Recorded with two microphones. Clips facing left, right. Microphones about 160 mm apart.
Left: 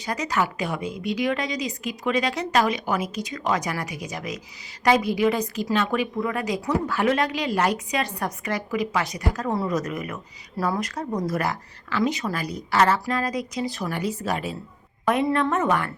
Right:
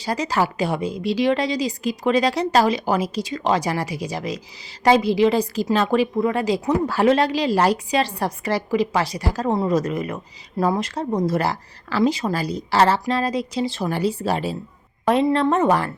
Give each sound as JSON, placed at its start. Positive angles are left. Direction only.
{"t": 0.0, "sound": "a woman's voice", "side_deg": -30}